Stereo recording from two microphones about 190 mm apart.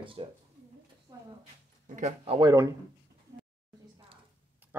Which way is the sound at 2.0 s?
35° right (ahead or behind).